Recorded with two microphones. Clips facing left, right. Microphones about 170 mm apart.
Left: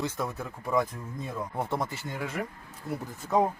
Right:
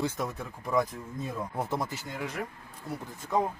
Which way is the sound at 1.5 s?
Centre (ahead or behind).